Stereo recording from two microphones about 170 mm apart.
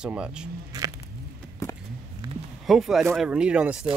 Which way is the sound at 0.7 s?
20° right (ahead or behind).